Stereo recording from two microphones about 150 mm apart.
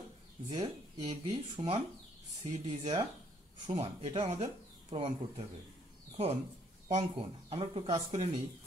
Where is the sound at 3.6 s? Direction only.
40° right (ahead or behind).